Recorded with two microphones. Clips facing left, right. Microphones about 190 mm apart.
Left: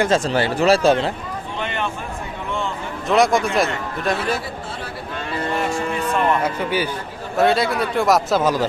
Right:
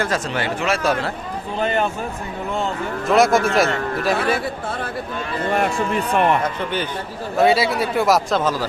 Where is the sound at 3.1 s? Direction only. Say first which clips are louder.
Right 1 dB; centre (ahead or behind).